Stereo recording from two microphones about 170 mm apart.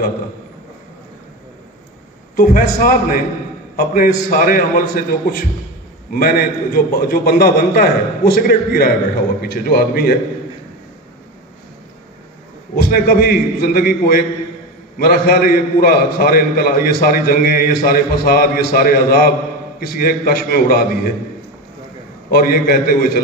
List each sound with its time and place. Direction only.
2.3 s a man's voice: 55° left (ahead or behind)
12.7 s a man's voice: 65° left (ahead or behind)
22.3 s a man's voice: 60° left (ahead or behind)